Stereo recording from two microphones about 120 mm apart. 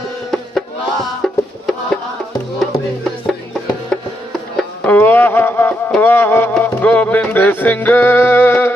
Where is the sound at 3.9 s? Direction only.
5° left (ahead or behind).